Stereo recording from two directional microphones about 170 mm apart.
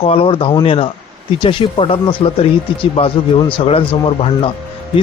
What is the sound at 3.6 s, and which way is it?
Speech, 35° left (ahead or behind).